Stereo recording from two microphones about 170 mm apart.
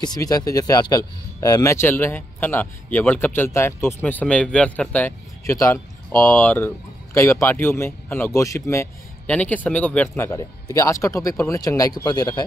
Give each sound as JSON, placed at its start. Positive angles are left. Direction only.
{"t": 0.0, "sound": "speech", "side_deg": 25}